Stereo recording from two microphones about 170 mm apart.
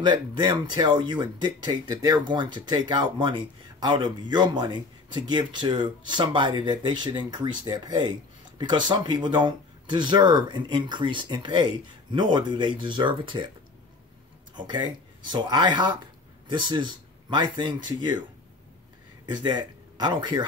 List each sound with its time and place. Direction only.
0.0 s speech: 25° right (ahead or behind)
14.5 s speech: 25° right (ahead or behind)
19.2 s speech: 25° right (ahead or behind)